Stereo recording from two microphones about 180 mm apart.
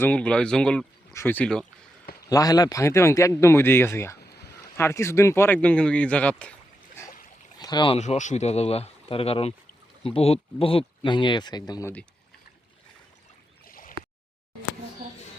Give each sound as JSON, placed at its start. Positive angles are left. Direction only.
{"t": 0.0, "sound": "speech", "side_deg": 5}
{"t": 2.3, "sound": "speech", "side_deg": 20}
{"t": 4.2, "sound": "a sound", "side_deg": 65}
{"t": 4.8, "sound": "speech", "side_deg": 15}
{"t": 7.6, "sound": "speech", "side_deg": 25}
{"t": 7.9, "sound": "speech", "side_deg": 40}
{"t": 13.7, "sound": "a sound", "side_deg": 50}